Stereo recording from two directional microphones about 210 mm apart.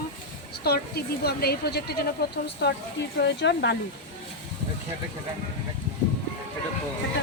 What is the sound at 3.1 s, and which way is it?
Speech, 55° left (ahead or behind).